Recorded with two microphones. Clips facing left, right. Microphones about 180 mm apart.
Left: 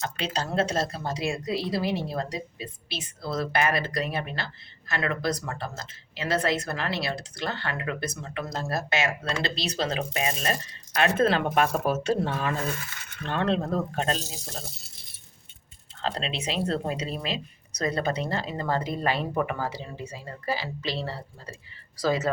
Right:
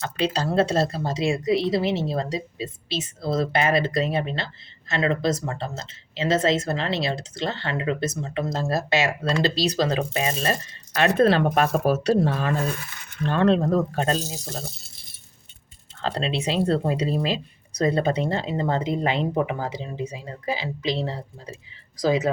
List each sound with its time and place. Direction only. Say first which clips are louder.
0.3 s speech: right 4 dB; 30° right (ahead or behind)
16.0 s speech: right 5 dB; 35° right (ahead or behind); by 22.3 s 15° right (ahead or behind)